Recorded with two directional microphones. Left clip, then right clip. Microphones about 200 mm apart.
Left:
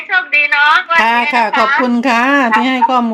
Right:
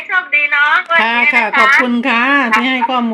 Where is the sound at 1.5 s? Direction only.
35° left (ahead or behind).